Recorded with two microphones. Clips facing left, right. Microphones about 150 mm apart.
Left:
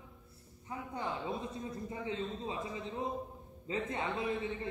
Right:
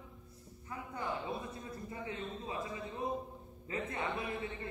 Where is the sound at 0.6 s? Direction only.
20° left (ahead or behind).